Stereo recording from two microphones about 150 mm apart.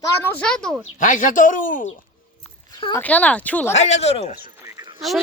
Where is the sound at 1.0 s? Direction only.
60° left (ahead or behind).